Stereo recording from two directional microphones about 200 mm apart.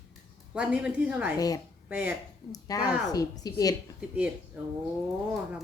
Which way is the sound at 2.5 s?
15° left (ahead or behind).